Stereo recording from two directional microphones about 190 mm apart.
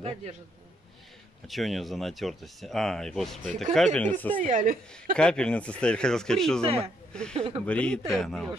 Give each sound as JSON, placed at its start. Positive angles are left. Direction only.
{"t": 1.5, "sound": "speech", "side_deg": 0}
{"t": 4.4, "sound": "speech", "side_deg": -45}
{"t": 5.1, "sound": "speech", "side_deg": 5}
{"t": 6.6, "sound": "a man's voice", "side_deg": -30}
{"t": 7.6, "sound": "speech", "side_deg": 5}